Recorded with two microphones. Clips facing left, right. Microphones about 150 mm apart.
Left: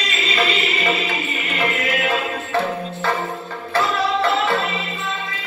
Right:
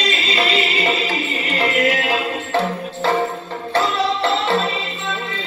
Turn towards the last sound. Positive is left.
turn(degrees=-30)  # may be behind; listen again after turning